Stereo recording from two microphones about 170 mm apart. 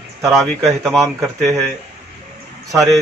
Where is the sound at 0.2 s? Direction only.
Centre (ahead or behind).